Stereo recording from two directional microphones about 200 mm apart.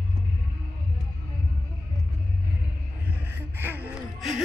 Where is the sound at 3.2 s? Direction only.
10° right (ahead or behind).